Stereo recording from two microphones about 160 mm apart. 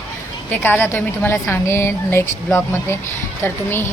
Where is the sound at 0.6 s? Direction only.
15° left (ahead or behind).